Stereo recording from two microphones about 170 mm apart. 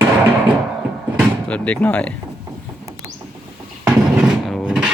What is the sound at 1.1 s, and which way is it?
Speech, 5° left (ahead or behind).